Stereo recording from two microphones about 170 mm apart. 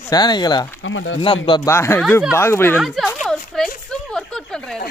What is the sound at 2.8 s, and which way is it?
Speech, centre (ahead or behind).